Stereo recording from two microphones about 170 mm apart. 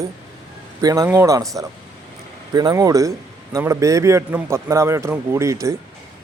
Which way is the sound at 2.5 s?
20° right (ahead or behind).